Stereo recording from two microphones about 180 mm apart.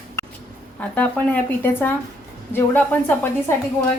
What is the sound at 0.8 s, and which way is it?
Speech, 10° left (ahead or behind).